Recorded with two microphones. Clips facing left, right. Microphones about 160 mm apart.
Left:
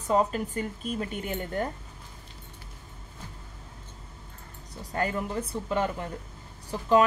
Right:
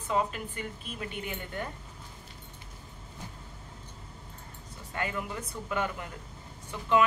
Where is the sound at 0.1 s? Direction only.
40° left (ahead or behind).